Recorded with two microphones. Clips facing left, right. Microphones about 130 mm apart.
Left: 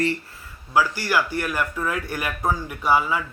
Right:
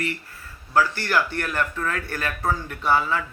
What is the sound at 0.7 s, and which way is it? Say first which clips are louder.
Speech: even; 10° left (ahead or behind).